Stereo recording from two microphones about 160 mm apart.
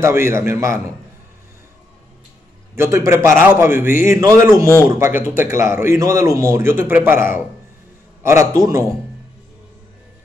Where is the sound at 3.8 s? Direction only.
55° left (ahead or behind).